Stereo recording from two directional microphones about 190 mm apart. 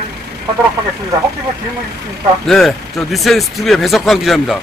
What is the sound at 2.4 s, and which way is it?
Speech, centre (ahead or behind).